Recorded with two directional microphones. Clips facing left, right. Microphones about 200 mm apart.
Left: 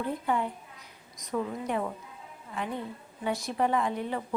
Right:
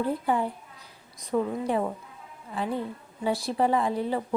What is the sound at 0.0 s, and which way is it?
A woman's voice, 35° right (ahead or behind).